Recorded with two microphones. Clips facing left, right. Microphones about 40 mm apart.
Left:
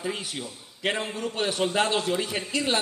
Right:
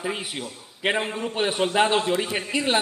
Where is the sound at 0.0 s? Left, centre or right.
Right.